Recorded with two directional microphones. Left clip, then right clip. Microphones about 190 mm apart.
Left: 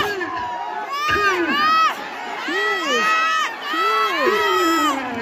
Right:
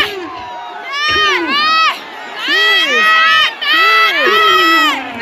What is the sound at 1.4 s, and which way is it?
Crowd, 50° left (ahead or behind).